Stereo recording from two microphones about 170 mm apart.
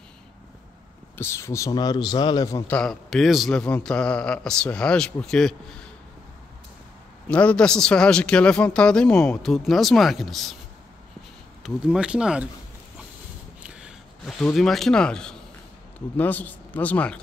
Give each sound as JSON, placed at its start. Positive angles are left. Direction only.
{"t": 1.1, "sound": "a man's voice", "side_deg": 15}
{"t": 2.7, "sound": "a man's voice", "side_deg": 5}
{"t": 7.2, "sound": "a man's voice", "side_deg": 5}
{"t": 11.6, "sound": "a man's voice", "side_deg": -5}
{"t": 13.6, "sound": "a sound", "side_deg": -5}
{"t": 14.4, "sound": "a man's voice", "side_deg": 0}